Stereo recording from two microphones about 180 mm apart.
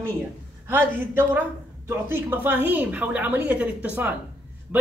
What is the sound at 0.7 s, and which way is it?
A woman's voice, 10° right (ahead or behind).